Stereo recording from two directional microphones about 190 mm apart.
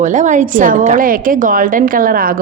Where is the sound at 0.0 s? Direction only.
40° right (ahead or behind).